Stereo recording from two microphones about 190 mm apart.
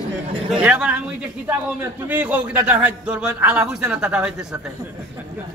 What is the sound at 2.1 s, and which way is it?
Speech, 10° right (ahead or behind).